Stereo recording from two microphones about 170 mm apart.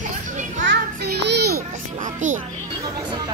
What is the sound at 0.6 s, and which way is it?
Speech, 85° right.